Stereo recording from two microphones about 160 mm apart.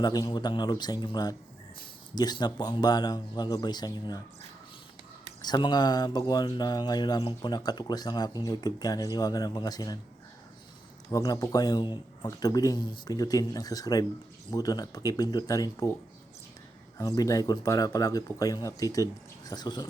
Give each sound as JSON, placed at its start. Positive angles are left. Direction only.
{"t": 0.0, "sound": "speech", "side_deg": 25}
{"t": 5.4, "sound": "speech", "side_deg": 25}
{"t": 11.1, "sound": "speech", "side_deg": 20}
{"t": 17.0, "sound": "speech", "side_deg": 20}